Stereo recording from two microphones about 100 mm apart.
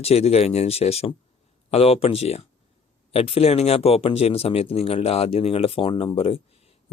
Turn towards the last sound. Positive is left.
turn(degrees=85)